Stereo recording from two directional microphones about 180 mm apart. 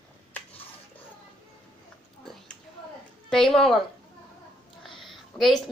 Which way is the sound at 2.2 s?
Centre (ahead or behind).